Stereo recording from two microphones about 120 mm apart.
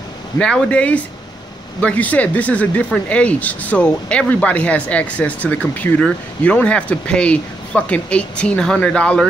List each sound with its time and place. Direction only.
0.4 s speech: 5° left (ahead or behind)